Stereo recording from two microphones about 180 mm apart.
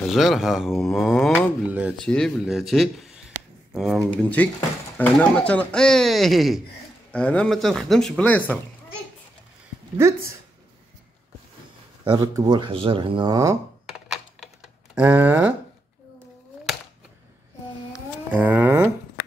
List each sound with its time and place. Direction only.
0.1 s speech: centre (ahead or behind)
1.7 s speech: 5° right (ahead or behind)
2.0 s speech: 5° left (ahead or behind)
4.1 s speech: 10° left (ahead or behind)
9.9 s speech: 15° right (ahead or behind)
12.0 s speech: 25° right (ahead or behind)
13.9 s computer keyboard: centre (ahead or behind)
15.0 s speech: 10° right (ahead or behind)
18.3 s speech: 10° right (ahead or behind)